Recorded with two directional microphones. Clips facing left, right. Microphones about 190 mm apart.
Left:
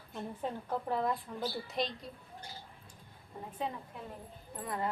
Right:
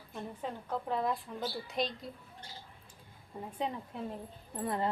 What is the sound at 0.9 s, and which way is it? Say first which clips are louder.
A woman's voice: even; centre (ahead or behind).